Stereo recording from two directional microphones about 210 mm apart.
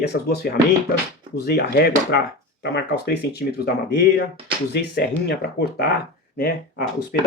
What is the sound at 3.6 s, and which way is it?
Speech, 50° left (ahead or behind).